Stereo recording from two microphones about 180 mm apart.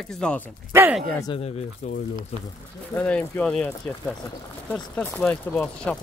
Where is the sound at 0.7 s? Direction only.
10° right (ahead or behind).